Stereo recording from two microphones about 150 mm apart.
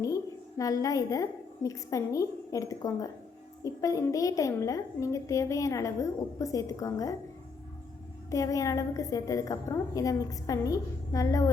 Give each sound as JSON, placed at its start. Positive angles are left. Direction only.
{"t": 0.0, "sound": "a woman's voice", "side_deg": 20}
{"t": 8.3, "sound": "a child's voice", "side_deg": 20}